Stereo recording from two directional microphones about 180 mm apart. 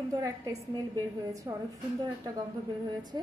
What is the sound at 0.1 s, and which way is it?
A woman's voice, 20° right (ahead or behind).